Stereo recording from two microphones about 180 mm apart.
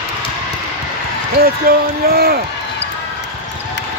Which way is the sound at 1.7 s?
55° right (ahead or behind).